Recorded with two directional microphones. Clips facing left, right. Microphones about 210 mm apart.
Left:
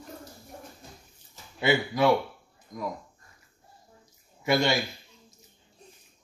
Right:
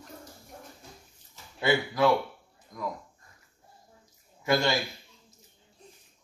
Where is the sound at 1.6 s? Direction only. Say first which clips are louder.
Left 1 dB; 15° left (ahead or behind).